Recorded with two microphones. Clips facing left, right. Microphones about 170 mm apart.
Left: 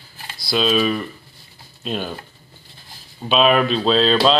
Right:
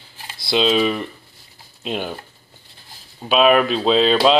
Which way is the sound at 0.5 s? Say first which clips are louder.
Right 1 dB; 20° right (ahead or behind).